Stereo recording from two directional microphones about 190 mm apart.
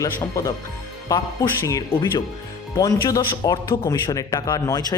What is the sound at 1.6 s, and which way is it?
Speech, 15° left (ahead or behind).